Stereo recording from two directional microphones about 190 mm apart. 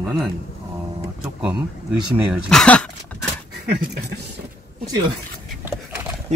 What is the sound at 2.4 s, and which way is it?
Speech, 5° left (ahead or behind).